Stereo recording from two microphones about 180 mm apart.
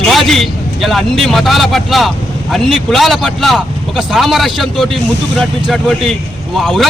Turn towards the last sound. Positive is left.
turn(degrees=0)  # may be behind; listen again after turning